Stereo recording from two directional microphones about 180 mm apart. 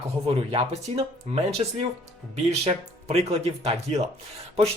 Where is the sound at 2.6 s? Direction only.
35° right (ahead or behind).